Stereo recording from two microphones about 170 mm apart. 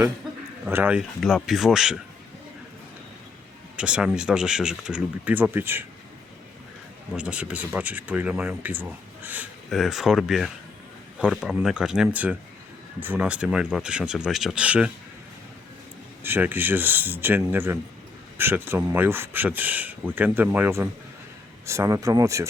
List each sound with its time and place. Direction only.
0.6 s speech: 10° right (ahead or behind)
3.8 s speech: 5° right (ahead or behind)
7.1 s speech: 5° right (ahead or behind)
16.2 s speech: 10° right (ahead or behind)